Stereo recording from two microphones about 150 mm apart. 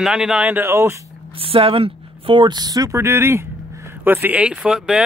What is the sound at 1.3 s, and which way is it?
Speech, 40° right (ahead or behind).